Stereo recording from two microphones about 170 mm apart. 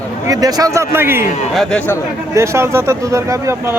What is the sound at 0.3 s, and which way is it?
Speech, 20° right (ahead or behind).